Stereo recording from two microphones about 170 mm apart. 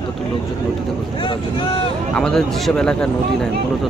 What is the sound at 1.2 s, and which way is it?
Speech, 30° left (ahead or behind).